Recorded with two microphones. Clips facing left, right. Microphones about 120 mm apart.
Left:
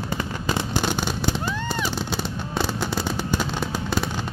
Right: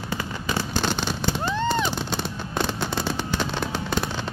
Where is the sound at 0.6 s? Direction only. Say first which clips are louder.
Right 1 dB; 15° left (ahead or behind).